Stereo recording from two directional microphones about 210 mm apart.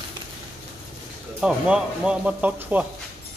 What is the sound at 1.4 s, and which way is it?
A man's voice, 5° right (ahead or behind).